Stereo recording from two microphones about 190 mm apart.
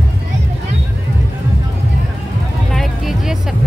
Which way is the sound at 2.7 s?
Centre (ahead or behind).